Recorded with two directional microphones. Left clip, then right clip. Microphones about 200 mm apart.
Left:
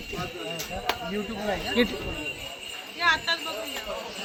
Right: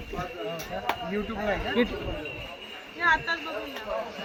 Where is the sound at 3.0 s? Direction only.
40° right (ahead or behind).